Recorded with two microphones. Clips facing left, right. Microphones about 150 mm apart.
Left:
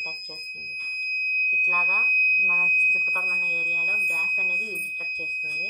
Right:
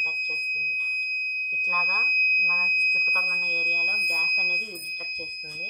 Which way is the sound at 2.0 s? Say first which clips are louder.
Left 1 dB; 20° left (ahead or behind).